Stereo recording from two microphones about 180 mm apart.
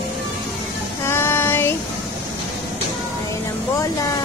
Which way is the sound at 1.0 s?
15° left (ahead or behind).